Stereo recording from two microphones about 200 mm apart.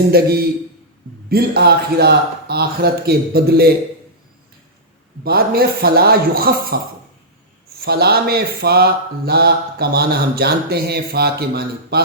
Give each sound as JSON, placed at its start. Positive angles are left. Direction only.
{"t": 0.1, "sound": "speech", "side_deg": -50}
{"t": 5.2, "sound": "speech", "side_deg": -50}
{"t": 7.9, "sound": "speech", "side_deg": -50}